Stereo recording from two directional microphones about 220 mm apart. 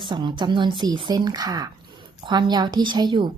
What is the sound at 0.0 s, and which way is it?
A woman's voice, 20° right (ahead or behind).